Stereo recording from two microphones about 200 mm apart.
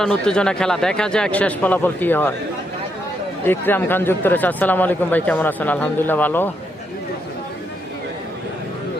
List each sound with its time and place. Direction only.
0.0 s speech: 5° left (ahead or behind)
3.4 s speech: 10° left (ahead or behind)